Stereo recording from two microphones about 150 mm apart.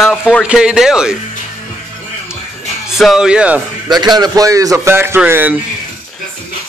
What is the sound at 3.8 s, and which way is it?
A man's voice, 30° right (ahead or behind).